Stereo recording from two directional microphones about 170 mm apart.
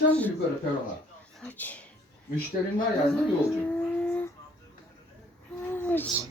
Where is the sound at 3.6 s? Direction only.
5° left (ahead or behind).